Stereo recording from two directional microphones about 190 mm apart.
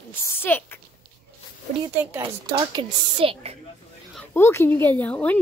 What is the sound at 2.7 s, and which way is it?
Speech, 25° right (ahead or behind).